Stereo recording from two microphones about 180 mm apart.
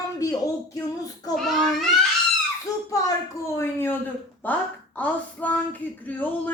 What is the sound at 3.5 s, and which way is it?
Speech, 10° left (ahead or behind).